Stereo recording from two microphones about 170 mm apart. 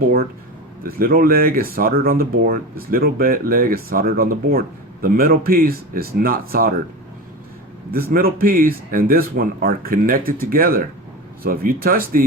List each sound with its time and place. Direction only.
0.8 s speech: 60° right (ahead or behind)
7.9 s speech: 60° right (ahead or behind)